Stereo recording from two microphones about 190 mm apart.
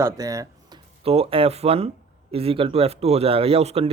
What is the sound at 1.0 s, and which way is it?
Speech, 30° right (ahead or behind).